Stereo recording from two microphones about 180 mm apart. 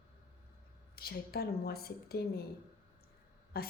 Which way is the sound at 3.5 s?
60° left (ahead or behind).